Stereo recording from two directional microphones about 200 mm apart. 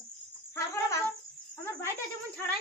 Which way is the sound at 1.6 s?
15° left (ahead or behind).